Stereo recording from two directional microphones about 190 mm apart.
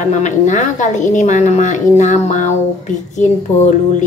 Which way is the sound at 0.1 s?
40° left (ahead or behind).